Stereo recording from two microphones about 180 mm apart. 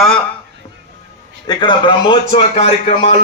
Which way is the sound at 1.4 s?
25° left (ahead or behind).